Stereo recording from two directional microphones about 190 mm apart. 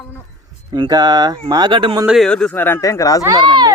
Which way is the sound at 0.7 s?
20° right (ahead or behind).